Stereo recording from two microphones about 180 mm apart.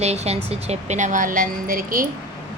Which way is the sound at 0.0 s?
35° right (ahead or behind).